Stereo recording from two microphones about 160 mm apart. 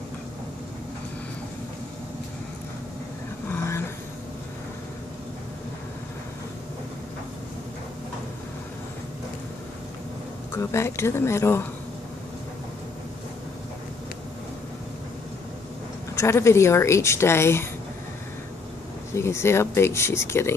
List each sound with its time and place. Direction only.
3.4 s a sound: 15° left (ahead or behind)
10.5 s a woman's voice: 15° left (ahead or behind)
16.2 s a woman's voice: 15° left (ahead or behind)
19.1 s a woman's voice: 15° left (ahead or behind)